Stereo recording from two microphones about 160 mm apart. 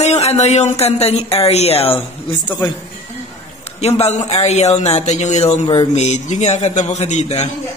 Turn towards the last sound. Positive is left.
turn(degrees=45)  # may be behind; listen again after turning